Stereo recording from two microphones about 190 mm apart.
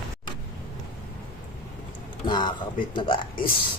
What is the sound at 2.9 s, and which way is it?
Speech, 25° left (ahead or behind).